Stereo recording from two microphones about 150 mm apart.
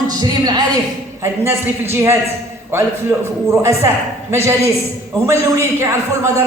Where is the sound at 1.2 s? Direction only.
15° right (ahead or behind).